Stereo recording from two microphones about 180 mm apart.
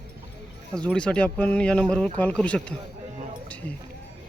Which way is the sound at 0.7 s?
5° left (ahead or behind).